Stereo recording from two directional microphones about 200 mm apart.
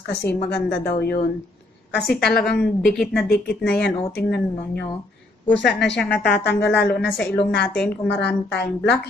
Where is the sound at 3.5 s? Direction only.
55° left (ahead or behind).